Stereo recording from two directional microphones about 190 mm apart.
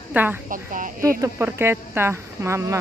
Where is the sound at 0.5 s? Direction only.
45° right (ahead or behind).